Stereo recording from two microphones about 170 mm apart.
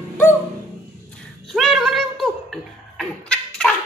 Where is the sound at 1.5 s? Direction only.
Centre (ahead or behind).